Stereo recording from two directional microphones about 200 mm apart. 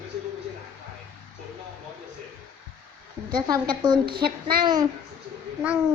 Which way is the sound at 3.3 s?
20° right (ahead or behind).